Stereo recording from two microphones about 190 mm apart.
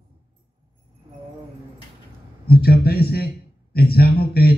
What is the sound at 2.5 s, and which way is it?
Speech, 55° left (ahead or behind).